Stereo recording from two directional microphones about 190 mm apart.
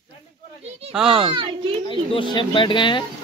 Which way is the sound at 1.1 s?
30° right (ahead or behind).